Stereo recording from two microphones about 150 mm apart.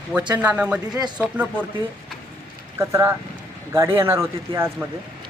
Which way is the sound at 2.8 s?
20° right (ahead or behind).